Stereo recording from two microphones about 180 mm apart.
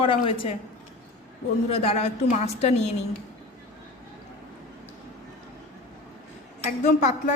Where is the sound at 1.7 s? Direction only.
35° left (ahead or behind).